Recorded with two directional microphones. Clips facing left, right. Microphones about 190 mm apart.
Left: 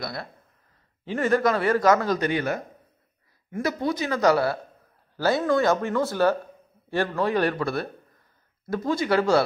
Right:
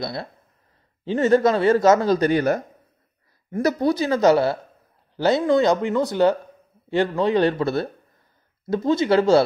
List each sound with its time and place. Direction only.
0.0 s speech: 25° right (ahead or behind)